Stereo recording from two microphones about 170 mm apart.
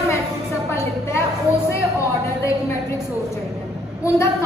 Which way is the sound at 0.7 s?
15° left (ahead or behind).